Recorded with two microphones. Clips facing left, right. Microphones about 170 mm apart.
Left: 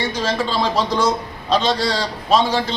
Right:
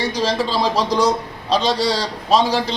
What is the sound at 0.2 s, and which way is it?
Speech, 10° right (ahead or behind).